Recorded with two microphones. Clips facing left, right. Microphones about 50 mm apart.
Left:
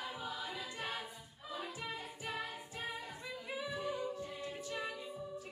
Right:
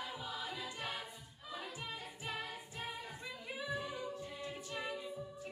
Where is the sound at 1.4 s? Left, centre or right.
Centre.